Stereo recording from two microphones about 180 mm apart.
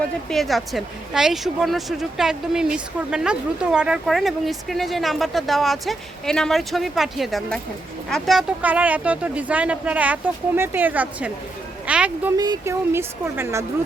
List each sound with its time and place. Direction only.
0.3 s a woman's voice: centre (ahead or behind)
12.4 s speech: 20° right (ahead or behind)